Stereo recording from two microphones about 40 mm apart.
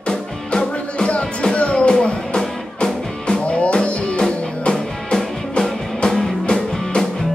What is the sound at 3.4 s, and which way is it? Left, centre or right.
Music, left.